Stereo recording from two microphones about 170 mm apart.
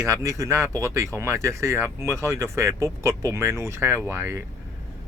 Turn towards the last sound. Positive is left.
turn(degrees=-15)  # may be behind; listen again after turning